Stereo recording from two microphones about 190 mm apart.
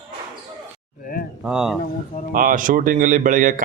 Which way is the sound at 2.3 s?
45° right (ahead or behind).